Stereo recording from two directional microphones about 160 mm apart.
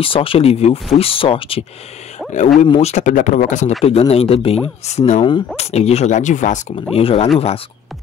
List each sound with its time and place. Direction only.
0.0 s speech: 35° left (ahead or behind)
2.6 s speech: 45° left (ahead or behind)
3.8 s speech: 40° left (ahead or behind)
6.9 s speech: 35° left (ahead or behind)